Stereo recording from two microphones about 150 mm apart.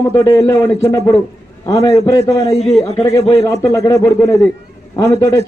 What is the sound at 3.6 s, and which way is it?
A man's voice, 20° left (ahead or behind).